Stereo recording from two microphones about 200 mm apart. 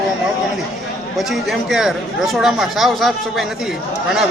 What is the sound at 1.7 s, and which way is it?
Speech, centre (ahead or behind).